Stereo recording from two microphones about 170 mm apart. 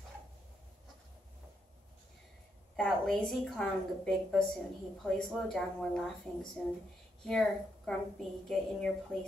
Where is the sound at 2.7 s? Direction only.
Centre (ahead or behind).